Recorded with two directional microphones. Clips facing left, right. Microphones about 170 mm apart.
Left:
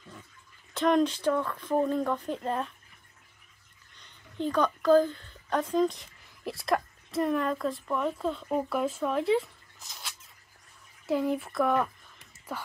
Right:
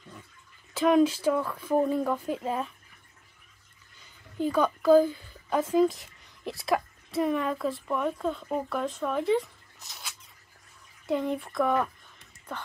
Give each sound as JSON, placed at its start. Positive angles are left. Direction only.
{"t": 0.7, "sound": "speech", "side_deg": -5}
{"t": 4.0, "sound": "a woman's voice", "side_deg": -5}